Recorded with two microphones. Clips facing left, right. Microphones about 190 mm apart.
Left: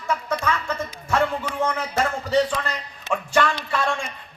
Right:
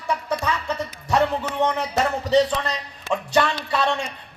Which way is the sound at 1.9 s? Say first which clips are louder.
Right 1 dB; 20° right (ahead or behind).